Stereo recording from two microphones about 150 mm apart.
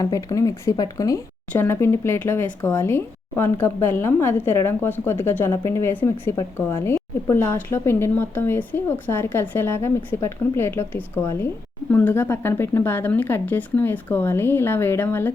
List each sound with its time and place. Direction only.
0.0 s a woman's voice: 25° left (ahead or behind)